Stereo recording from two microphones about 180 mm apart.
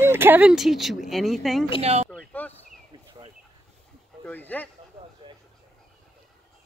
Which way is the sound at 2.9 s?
25° right (ahead or behind).